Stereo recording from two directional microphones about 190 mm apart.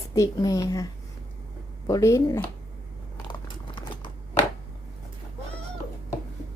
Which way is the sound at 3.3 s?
25° left (ahead or behind).